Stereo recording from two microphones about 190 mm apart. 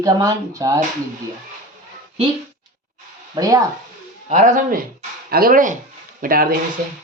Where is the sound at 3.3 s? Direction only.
20° right (ahead or behind).